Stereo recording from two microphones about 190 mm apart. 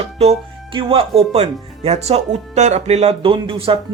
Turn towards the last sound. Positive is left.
turn(degrees=-30)  # may be behind; listen again after turning